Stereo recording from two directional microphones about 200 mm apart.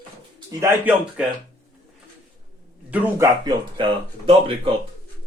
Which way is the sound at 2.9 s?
10° right (ahead or behind).